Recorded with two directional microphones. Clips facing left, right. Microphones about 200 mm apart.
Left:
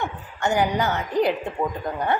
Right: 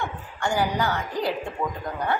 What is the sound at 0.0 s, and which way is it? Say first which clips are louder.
A woman's voice: left 3 dB; 20° left (ahead or behind).